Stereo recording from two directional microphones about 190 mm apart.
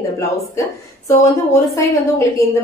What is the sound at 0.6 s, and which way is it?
A woman's voice, 15° left (ahead or behind).